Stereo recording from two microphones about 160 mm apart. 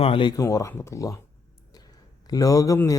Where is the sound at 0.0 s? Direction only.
30° left (ahead or behind).